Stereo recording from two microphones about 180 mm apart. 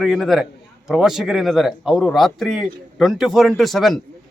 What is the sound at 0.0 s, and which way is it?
A man's voice, centre (ahead or behind).